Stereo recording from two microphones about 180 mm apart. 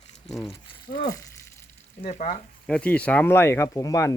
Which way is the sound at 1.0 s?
20° left (ahead or behind).